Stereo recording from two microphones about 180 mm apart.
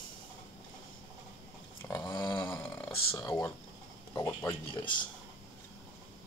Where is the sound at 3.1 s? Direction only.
15° left (ahead or behind).